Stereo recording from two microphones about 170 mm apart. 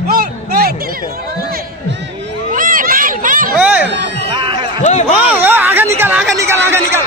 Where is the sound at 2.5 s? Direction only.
50° right (ahead or behind).